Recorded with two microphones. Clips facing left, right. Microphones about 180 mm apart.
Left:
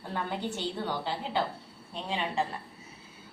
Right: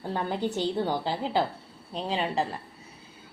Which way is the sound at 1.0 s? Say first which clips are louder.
Right 4 dB; 35° right (ahead or behind).